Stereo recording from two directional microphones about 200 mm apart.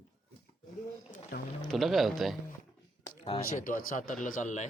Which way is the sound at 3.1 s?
20° left (ahead or behind).